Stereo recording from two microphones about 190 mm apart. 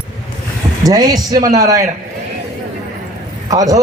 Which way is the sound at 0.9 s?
20° right (ahead or behind).